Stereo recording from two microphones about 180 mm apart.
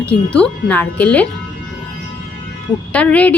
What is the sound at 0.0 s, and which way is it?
A woman's voice, 5° left (ahead or behind).